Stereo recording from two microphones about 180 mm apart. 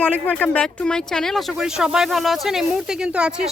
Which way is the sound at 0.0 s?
10° left (ahead or behind).